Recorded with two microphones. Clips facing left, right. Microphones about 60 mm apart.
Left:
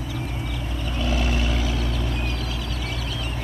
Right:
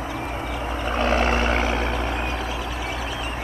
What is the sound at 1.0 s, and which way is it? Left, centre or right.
Vehicle, right.